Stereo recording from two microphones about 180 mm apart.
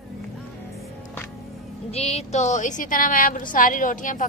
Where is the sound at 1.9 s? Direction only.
35° left (ahead or behind).